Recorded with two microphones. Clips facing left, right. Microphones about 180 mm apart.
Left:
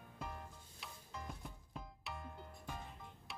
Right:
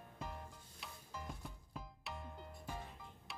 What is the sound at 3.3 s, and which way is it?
Music, centre (ahead or behind).